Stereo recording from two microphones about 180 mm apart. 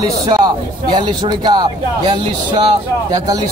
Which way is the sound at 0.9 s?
25° right (ahead or behind).